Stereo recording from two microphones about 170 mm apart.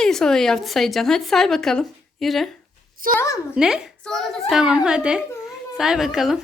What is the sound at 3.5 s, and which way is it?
A woman's voice, 5° right (ahead or behind).